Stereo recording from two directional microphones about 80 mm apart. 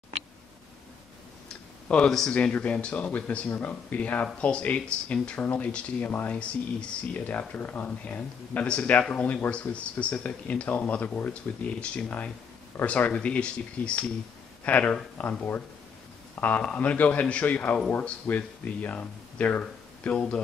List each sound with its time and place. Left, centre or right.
1.9 s speech: centre